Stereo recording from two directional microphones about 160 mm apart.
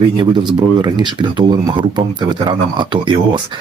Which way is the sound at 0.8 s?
30° right (ahead or behind).